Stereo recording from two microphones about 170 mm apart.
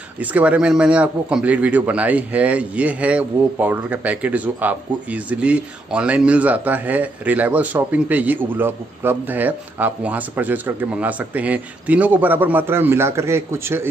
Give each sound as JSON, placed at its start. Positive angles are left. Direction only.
{"t": 0.2, "sound": "a man's voice", "side_deg": -10}